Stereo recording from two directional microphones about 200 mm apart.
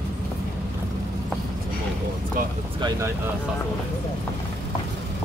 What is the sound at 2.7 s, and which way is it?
Vehicle, 20° right (ahead or behind).